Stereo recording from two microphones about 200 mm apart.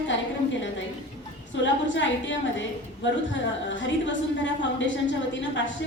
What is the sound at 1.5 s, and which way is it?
A woman's voice, 65° left (ahead or behind).